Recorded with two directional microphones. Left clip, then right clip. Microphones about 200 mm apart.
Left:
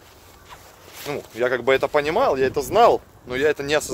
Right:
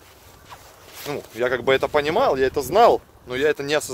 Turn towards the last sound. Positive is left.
turn(degrees=-10)  # may be behind; listen again after turning